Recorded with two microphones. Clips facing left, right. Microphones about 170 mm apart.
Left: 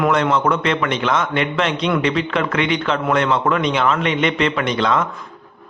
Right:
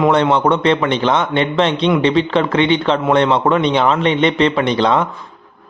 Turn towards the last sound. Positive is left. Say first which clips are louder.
# right 4 dB
turn(degrees=-30)  # may be behind; listen again after turning